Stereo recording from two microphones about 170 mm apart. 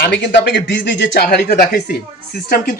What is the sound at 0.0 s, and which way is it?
Speech, 85° left.